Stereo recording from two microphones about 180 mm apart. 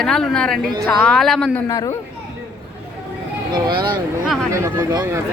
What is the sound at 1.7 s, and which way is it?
Speech, 20° left (ahead or behind).